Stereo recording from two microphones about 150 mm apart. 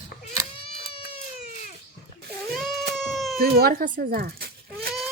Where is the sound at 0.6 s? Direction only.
40° left (ahead or behind).